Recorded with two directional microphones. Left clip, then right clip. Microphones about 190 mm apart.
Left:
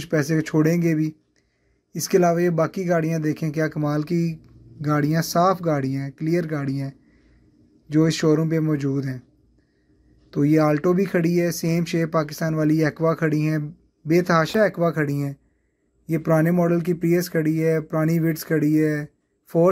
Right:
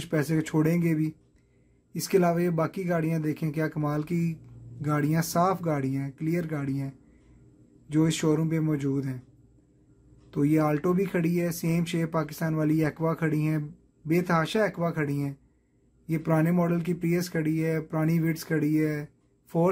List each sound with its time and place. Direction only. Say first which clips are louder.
0.0 s speech: left 6 dB; 10° left (ahead or behind)
10.3 s speech: left 6 dB; 15° left (ahead or behind)